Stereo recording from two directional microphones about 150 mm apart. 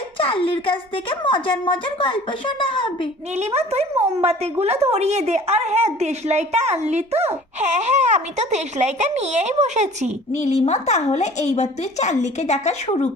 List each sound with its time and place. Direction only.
0.2 s a woman's voice: 35° left (ahead or behind)
3.3 s a woman's voice: 45° right (ahead or behind)
10.3 s a woman's voice: 50° left (ahead or behind)